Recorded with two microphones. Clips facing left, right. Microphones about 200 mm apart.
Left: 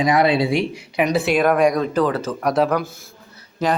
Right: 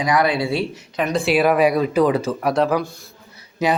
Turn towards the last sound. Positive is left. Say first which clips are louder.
# right 1 dB
turn(degrees=-10)  # may be behind; listen again after turning